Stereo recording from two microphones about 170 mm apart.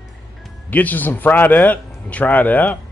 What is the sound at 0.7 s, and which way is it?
A man's voice, 10° left (ahead or behind).